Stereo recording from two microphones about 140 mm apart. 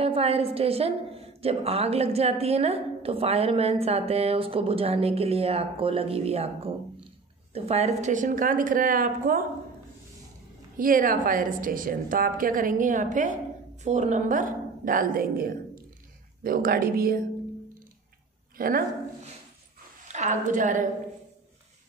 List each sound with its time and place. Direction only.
0.0 s a woman's voice: 45° right (ahead or behind); by 9.4 s 80° right
10.8 s a woman's voice: 80° right
18.6 s speech: 90° right
20.1 s a woman's voice: 60° right (ahead or behind)